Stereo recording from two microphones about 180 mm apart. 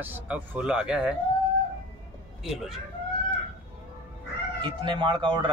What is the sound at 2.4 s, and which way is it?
Speech, centre (ahead or behind).